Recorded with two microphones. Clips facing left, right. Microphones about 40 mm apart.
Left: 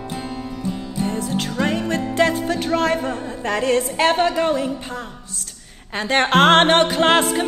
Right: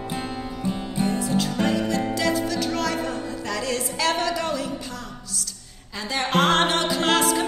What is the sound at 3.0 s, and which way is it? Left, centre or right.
A woman's voice, left.